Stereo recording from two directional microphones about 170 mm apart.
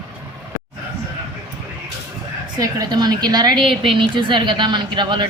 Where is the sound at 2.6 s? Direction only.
20° right (ahead or behind).